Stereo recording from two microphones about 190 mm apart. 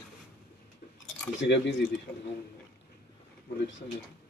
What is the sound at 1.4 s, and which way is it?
Speech, 70° left (ahead or behind).